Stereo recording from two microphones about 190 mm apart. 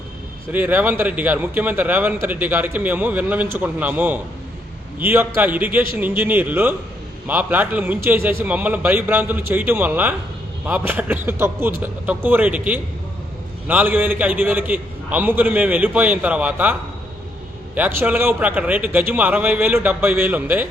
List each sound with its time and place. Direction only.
0.5 s a man's voice: 10° right (ahead or behind)
17.7 s a man's voice: 10° right (ahead or behind)